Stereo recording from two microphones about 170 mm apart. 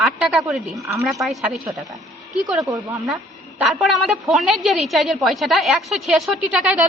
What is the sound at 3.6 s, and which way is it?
A woman's voice, 5° right (ahead or behind).